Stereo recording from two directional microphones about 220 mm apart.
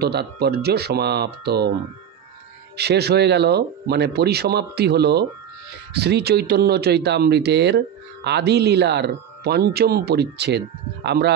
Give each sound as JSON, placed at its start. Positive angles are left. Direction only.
{"t": 0.0, "sound": "speech", "side_deg": -50}
{"t": 2.8, "sound": "speech", "side_deg": -50}